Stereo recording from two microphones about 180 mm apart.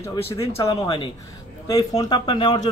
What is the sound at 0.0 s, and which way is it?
Speech, 15° left (ahead or behind).